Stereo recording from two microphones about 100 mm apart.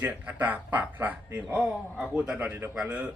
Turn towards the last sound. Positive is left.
turn(degrees=-10)  # may be behind; listen again after turning